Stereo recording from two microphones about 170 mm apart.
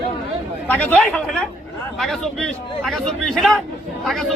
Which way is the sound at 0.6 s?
10° left (ahead or behind).